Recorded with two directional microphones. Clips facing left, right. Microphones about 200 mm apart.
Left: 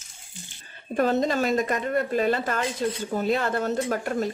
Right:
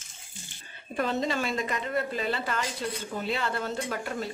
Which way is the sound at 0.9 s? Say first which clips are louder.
Left 6 dB; 45° left (ahead or behind).